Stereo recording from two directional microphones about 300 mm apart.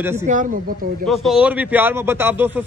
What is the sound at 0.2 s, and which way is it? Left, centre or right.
Speech, right.